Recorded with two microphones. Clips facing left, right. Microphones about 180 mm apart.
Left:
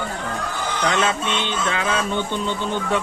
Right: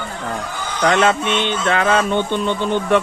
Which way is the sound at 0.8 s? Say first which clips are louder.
Right 7 dB; 65° right (ahead or behind).